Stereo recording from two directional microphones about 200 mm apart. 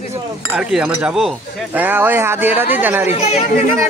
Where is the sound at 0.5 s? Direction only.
5° right (ahead or behind).